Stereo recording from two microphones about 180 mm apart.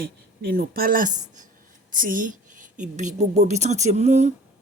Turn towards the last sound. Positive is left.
turn(degrees=-40)  # may be behind; listen again after turning